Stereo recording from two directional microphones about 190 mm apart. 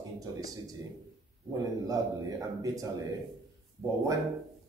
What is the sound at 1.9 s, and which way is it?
Speech, 20° right (ahead or behind).